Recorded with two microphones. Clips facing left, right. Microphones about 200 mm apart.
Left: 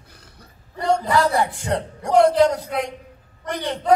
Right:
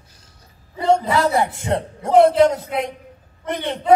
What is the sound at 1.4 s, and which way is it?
Speech, 20° right (ahead or behind).